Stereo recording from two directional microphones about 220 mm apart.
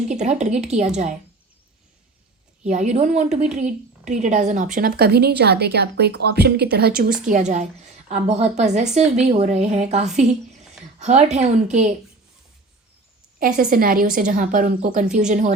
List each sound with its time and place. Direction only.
0.1 s a woman's voice: 30° right (ahead or behind)
2.6 s a woman's voice: 30° right (ahead or behind)
7.3 s a woman's voice: 35° right (ahead or behind)
13.4 s a woman's voice: 40° right (ahead or behind)